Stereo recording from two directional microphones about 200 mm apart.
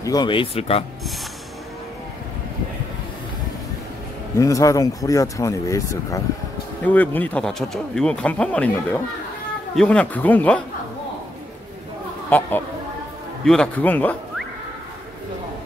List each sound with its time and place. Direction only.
0.0 s speech: 20° left (ahead or behind)
4.4 s speech: 15° left (ahead or behind)
9.8 s speech: 5° left (ahead or behind)
12.3 s speech: 10° left (ahead or behind)